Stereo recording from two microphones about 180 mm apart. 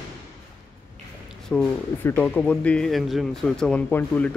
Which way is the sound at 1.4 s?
5° left (ahead or behind).